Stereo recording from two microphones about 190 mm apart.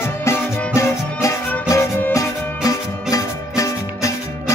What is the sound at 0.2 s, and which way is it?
Music, 15° left (ahead or behind).